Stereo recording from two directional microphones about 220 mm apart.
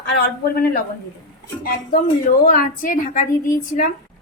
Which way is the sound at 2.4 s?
40° left (ahead or behind).